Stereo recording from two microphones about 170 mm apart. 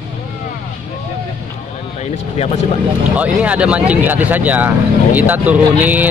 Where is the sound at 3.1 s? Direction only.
10° right (ahead or behind).